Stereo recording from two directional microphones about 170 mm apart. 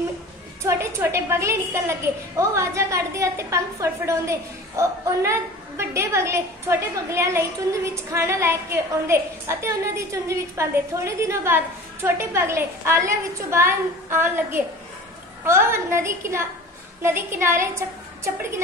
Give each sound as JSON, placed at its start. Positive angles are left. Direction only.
{"t": 0.7, "sound": "a woman's voice", "side_deg": -15}